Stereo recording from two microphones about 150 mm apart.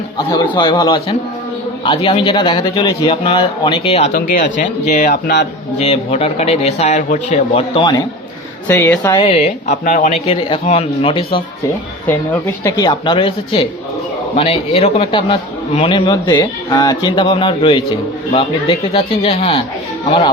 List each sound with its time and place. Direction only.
0.5 s a man's voice: 30° left (ahead or behind)
4.1 s speech: 60° left (ahead or behind)
5.8 s speech: 40° left (ahead or behind)
7.7 s a man's voice: 30° left (ahead or behind)
8.6 s a woman's voice: 15° left (ahead or behind)
9.2 s speech: 40° left (ahead or behind)
9.8 s speech: 55° left (ahead or behind)
10.2 s a man's voice: 40° left (ahead or behind)
12.0 s a woman's voice: 10° left (ahead or behind)
12.7 s a man's voice: 30° left (ahead or behind)